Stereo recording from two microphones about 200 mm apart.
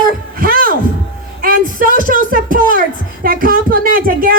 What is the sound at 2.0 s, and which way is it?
Speech, 45° right (ahead or behind).